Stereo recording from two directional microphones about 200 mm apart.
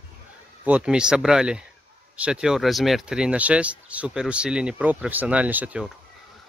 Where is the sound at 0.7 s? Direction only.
5° right (ahead or behind).